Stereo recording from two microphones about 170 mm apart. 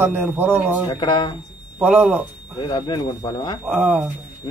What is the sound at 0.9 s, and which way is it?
Speech, 25° left (ahead or behind).